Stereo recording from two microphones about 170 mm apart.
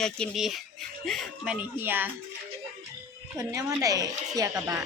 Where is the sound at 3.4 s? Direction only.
20° right (ahead or behind).